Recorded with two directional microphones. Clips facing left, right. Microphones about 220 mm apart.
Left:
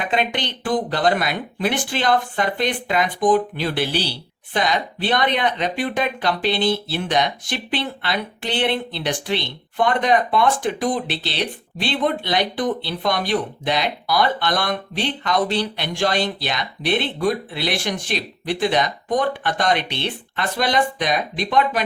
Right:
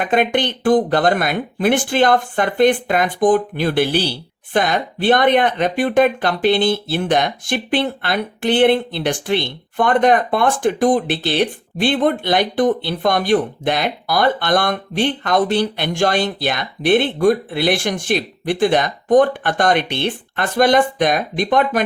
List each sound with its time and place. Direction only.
0.0 s speech: 50° right (ahead or behind)